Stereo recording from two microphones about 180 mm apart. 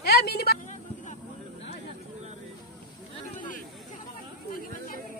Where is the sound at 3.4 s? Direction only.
50° left (ahead or behind).